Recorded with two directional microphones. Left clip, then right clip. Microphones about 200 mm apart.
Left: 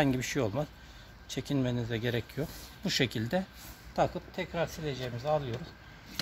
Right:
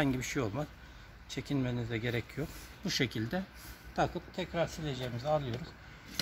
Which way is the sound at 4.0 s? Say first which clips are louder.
Left 3 dB; 25° left (ahead or behind).